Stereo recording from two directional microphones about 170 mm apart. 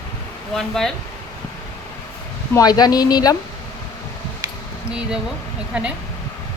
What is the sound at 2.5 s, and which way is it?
Speech, 20° left (ahead or behind).